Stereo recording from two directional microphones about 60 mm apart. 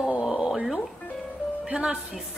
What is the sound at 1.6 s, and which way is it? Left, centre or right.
Speech, centre.